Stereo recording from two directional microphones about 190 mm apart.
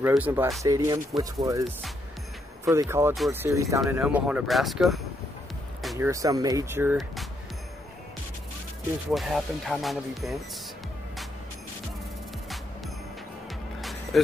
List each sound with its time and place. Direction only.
0.0 s speech: 10° right (ahead or behind)
2.6 s speech: 15° right (ahead or behind); by 5.0 s centre (ahead or behind)
5.9 s speech: 15° right (ahead or behind)
9.1 s speech: centre (ahead or behind)
13.7 s music: centre (ahead or behind)